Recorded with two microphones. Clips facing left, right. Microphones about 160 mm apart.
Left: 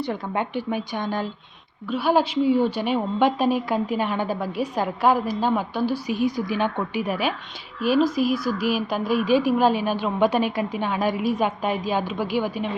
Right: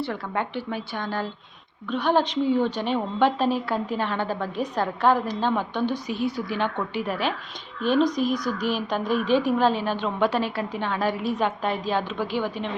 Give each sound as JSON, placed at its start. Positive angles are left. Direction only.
{"t": 0.0, "sound": "a woman's voice", "side_deg": 15}